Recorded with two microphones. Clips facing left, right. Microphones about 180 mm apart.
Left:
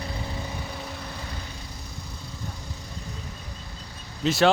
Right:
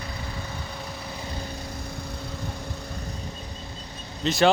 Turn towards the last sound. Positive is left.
turn(degrees=5)  # may be behind; listen again after turning